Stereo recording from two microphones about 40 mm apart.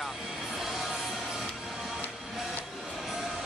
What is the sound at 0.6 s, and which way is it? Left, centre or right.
Music, centre.